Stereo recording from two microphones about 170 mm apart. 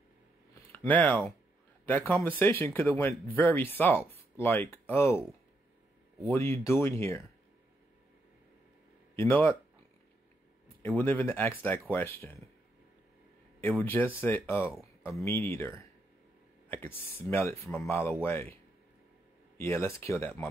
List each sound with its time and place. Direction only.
0.7 s speech: 10° left (ahead or behind)
6.2 s speech: 15° left (ahead or behind)
9.1 s speech: 15° left (ahead or behind)
11.0 s speech: 10° left (ahead or behind)
13.6 s speech: 10° left (ahead or behind)